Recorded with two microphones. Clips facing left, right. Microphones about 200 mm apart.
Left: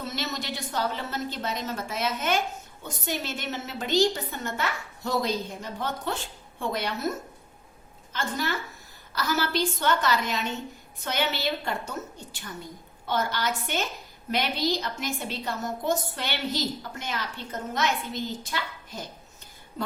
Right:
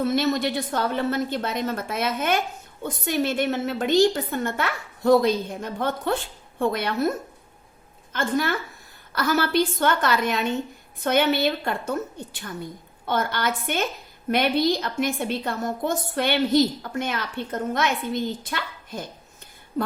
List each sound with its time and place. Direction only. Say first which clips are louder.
0.0 s a woman's voice: right 11 dB; 55° right (ahead or behind)
8.1 s a woman's voice: right 6 dB; 55° right (ahead or behind)